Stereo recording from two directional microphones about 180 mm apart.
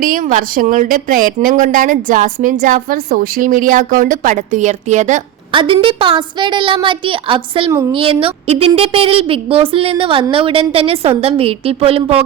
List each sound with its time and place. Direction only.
0.0 s speech: 50° right (ahead or behind)
5.5 s a woman's voice: 30° right (ahead or behind)